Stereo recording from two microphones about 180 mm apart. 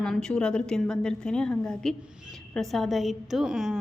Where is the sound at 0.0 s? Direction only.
5° left (ahead or behind).